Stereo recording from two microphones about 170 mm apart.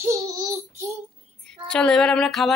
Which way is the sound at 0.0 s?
20° right (ahead or behind).